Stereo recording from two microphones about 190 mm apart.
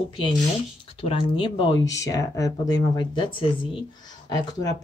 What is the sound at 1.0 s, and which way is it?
Speech, 30° left (ahead or behind).